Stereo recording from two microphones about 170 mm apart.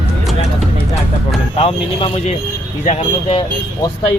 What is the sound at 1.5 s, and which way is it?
A man's voice, 35° left (ahead or behind).